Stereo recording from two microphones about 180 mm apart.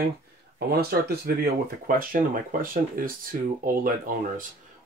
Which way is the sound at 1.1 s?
55° right (ahead or behind).